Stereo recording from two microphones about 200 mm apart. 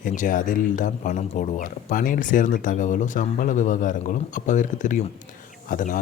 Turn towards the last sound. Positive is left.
turn(degrees=40)  # may be behind; listen again after turning